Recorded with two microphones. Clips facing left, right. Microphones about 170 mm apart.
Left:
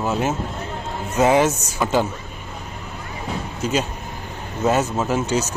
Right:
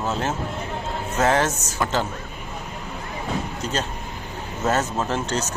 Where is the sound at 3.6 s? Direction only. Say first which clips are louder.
Left 4 dB; 10° left (ahead or behind).